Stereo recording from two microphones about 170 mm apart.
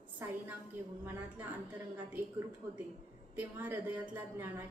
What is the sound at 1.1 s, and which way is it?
A woman's voice, 10° right (ahead or behind).